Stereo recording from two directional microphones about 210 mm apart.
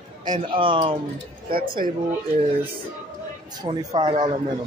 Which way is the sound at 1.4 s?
40° right (ahead or behind).